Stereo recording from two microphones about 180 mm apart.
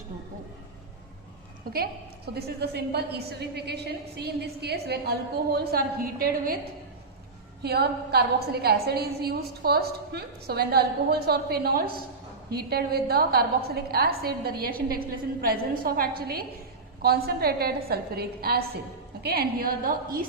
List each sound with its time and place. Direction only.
1.7 s a woman's voice: 60° right (ahead or behind)
7.6 s a woman's voice: 60° right (ahead or behind)